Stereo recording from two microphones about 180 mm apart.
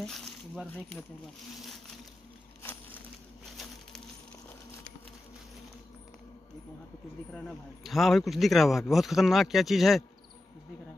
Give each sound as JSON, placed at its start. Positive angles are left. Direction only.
{"t": 0.0, "sound": "coin", "side_deg": 0}
{"t": 7.4, "sound": "speech", "side_deg": 0}